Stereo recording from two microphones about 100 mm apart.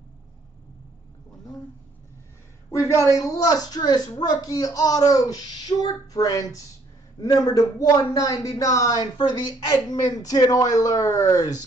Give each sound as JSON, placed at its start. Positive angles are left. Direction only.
{"t": 2.7, "sound": "speech", "side_deg": 30}